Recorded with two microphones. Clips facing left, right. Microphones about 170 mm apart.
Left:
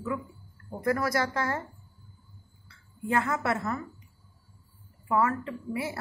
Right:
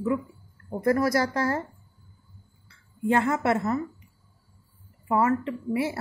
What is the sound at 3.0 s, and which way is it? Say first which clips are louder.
Speech: right 5 dB; 30° right (ahead or behind).